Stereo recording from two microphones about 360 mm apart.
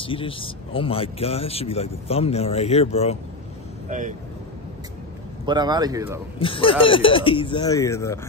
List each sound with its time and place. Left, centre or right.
0.0 s speech: centre
3.9 s speech: right
5.4 s speech: centre
6.4 s speech: centre